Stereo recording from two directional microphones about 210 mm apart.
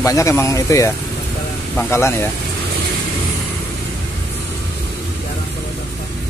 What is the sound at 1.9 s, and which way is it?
Speech, 10° left (ahead or behind).